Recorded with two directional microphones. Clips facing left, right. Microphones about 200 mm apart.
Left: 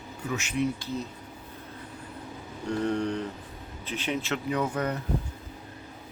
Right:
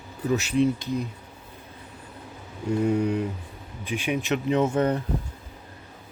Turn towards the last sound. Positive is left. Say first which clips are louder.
# right 6 dB
turn(degrees=-30)  # may be behind; listen again after turning